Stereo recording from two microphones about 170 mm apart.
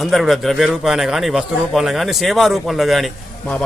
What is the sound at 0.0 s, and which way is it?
A man's voice, centre (ahead or behind).